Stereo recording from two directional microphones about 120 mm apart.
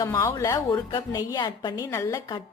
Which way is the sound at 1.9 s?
20° left (ahead or behind).